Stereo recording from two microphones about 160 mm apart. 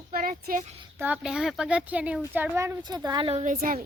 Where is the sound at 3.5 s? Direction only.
60° right (ahead or behind).